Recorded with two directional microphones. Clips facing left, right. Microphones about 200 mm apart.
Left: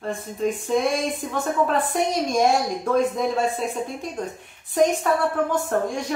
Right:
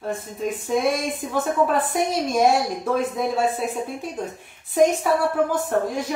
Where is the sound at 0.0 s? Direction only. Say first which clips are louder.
Left 2 dB; 5° right (ahead or behind).